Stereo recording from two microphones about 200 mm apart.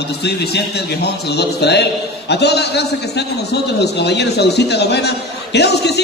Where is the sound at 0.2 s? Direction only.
55° left (ahead or behind).